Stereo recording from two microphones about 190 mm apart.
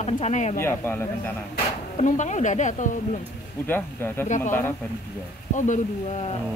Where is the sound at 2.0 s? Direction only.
40° left (ahead or behind).